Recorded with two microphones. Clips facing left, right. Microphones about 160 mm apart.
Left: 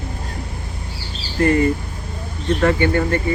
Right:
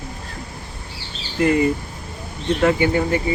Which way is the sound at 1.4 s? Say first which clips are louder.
Left 1 dB; 10° right (ahead or behind).